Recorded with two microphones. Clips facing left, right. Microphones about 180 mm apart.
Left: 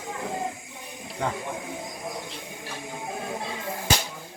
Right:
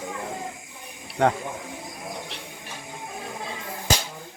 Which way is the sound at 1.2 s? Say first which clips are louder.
Right 8 dB; 70° right (ahead or behind).